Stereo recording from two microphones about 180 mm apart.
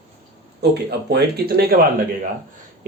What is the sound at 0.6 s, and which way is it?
Speech, 65° right (ahead or behind).